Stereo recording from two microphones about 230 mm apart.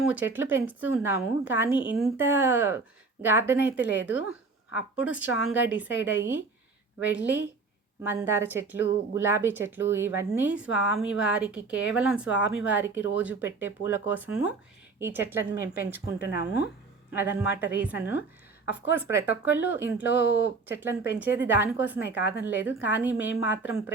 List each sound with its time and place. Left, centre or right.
0.1 s a woman's voice: centre
3.8 s speech: left
4.9 s a woman's voice: centre
20.1 s speech: left
20.7 s a woman's voice: centre